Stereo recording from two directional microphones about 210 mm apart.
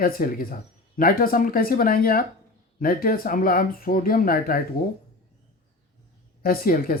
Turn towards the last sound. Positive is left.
turn(degrees=45)  # may be behind; listen again after turning